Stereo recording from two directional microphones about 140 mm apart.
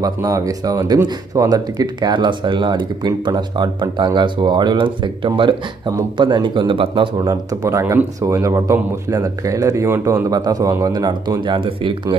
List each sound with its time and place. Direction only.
0.0 s speech: 25° right (ahead or behind)
7.2 s speech: 25° right (ahead or behind)
10.3 s speech: 25° right (ahead or behind)